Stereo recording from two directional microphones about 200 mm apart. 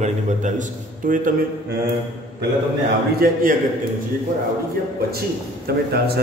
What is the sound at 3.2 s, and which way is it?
Speech, 50° right (ahead or behind).